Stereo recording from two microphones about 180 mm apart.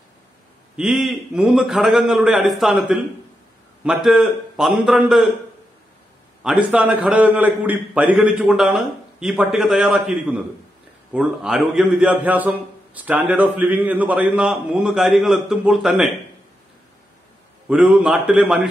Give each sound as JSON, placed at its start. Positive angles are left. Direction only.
{"t": 0.7, "sound": "a man's voice", "side_deg": -5}
{"t": 6.4, "sound": "a man's voice", "side_deg": -5}
{"t": 17.6, "sound": "a man's voice", "side_deg": -5}